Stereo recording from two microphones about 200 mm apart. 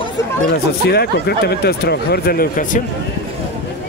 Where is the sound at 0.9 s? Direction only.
55° left (ahead or behind).